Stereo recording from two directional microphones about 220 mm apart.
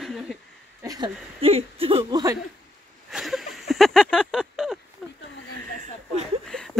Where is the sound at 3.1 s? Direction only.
Centre (ahead or behind).